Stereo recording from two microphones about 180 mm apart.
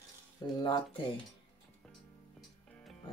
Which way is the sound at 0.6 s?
25° left (ahead or behind).